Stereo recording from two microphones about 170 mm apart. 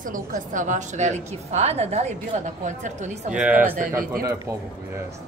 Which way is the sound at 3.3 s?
10° right (ahead or behind).